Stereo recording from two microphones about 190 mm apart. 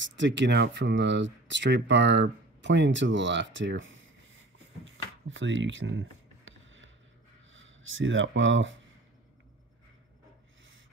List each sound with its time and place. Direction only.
0.0 s speech: 70° right (ahead or behind); by 4.4 s 85° right
4.8 s a sound: 85° right
7.5 s speech: 90° right